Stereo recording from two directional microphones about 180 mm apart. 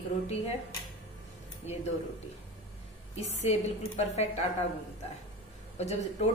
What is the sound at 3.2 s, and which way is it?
A woman's voice, 35° left (ahead or behind).